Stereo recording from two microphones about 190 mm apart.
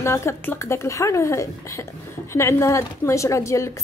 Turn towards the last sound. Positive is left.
turn(degrees=15)  # may be behind; listen again after turning